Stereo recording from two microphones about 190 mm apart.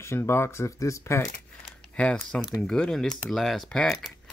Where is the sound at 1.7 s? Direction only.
5° left (ahead or behind).